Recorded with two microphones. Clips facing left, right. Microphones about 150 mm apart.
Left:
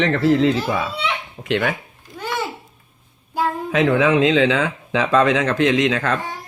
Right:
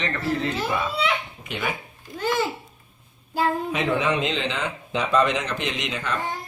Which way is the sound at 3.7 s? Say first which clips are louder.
Left 7 dB; 90° left.